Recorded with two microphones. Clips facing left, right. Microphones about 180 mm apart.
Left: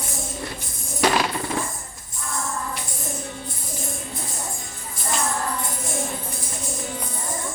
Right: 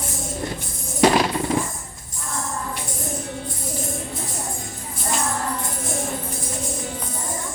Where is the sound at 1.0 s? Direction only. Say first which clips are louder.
Right 4 dB; 15° right (ahead or behind).